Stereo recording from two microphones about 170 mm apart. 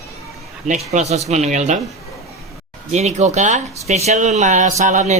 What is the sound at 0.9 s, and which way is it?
Speech, 40° right (ahead or behind).